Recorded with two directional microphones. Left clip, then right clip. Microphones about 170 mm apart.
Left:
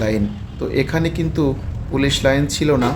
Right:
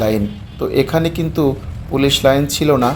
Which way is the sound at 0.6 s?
15° right (ahead or behind).